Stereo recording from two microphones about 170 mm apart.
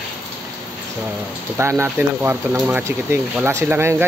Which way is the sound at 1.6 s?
15° right (ahead or behind).